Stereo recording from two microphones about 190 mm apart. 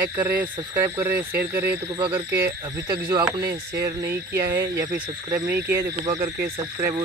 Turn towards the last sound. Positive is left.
turn(degrees=-15)  # may be behind; listen again after turning